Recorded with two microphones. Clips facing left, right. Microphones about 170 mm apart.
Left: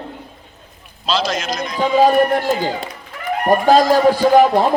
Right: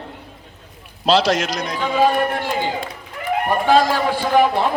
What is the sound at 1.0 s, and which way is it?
Speech, 70° right (ahead or behind).